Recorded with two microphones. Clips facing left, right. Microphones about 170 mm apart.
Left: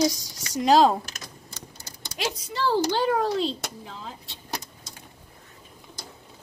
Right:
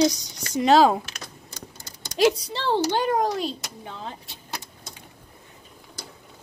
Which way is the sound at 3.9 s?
65° right (ahead or behind).